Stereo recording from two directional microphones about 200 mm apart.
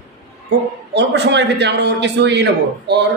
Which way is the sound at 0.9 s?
60° right (ahead or behind).